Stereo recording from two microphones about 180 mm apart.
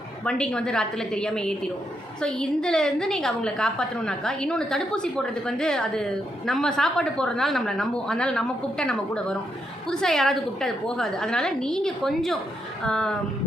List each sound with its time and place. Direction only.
0.3 s a woman's voice: 5° left (ahead or behind)